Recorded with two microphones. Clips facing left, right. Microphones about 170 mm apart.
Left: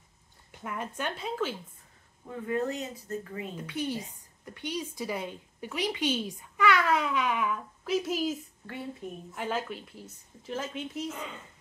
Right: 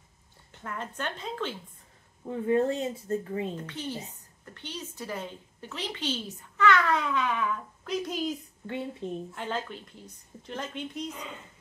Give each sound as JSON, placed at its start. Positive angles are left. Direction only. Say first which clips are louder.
{"t": 0.5, "sound": "a woman's voice", "louder": "left 1 dB", "side_deg": 10}
{"t": 2.2, "sound": "speech", "louder": "right 5 dB", "side_deg": -30}
{"t": 3.5, "sound": "a woman's voice", "louder": "left 3 dB", "side_deg": 10}
{"t": 8.6, "sound": "speech", "louder": "right 4 dB", "side_deg": -25}
{"t": 9.3, "sound": "a woman's voice", "louder": "left 1 dB", "side_deg": 10}